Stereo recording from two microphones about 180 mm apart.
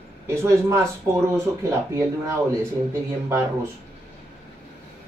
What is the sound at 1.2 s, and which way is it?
Speech, 15° right (ahead or behind).